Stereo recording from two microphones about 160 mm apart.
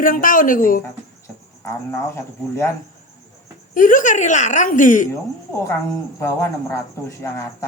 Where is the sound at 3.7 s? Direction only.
55° left (ahead or behind).